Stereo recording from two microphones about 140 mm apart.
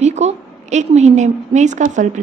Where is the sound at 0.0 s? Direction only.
55° right (ahead or behind).